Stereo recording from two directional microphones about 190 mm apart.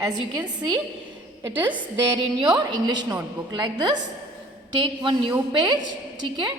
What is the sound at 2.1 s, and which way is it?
A woman's voice, 25° right (ahead or behind).